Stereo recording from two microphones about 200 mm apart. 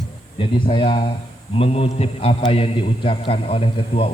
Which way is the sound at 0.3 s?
25° left (ahead or behind).